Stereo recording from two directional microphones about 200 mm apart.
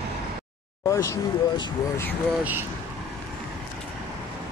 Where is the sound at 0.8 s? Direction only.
15° left (ahead or behind).